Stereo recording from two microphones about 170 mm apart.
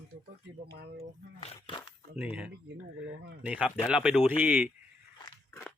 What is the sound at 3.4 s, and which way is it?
Speech, 5° right (ahead or behind).